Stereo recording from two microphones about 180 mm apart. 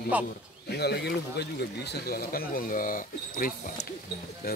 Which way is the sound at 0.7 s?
65° left (ahead or behind).